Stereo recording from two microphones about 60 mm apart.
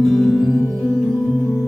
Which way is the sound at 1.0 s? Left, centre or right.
Centre.